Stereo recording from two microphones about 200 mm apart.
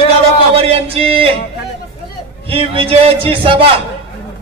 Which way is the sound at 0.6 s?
30° right (ahead or behind).